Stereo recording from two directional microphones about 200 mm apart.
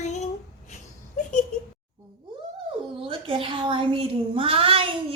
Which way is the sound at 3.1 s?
25° right (ahead or behind).